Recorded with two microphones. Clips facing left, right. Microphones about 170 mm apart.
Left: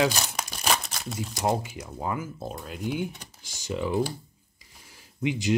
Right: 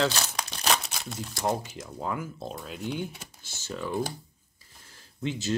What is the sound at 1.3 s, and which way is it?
Speech, 15° left (ahead or behind).